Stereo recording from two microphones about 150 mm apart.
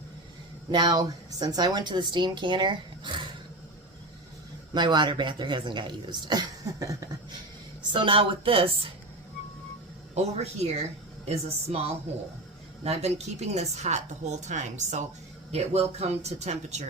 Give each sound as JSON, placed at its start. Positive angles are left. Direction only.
{"t": 0.7, "sound": "a woman's voice", "side_deg": -30}
{"t": 4.7, "sound": "a woman's voice", "side_deg": -30}
{"t": 7.8, "sound": "a woman's voice", "side_deg": -35}
{"t": 10.2, "sound": "a woman's voice", "side_deg": -45}